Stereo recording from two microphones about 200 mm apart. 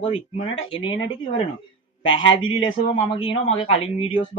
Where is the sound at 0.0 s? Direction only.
30° left (ahead or behind).